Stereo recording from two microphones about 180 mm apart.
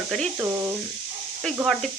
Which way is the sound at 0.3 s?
10° right (ahead or behind).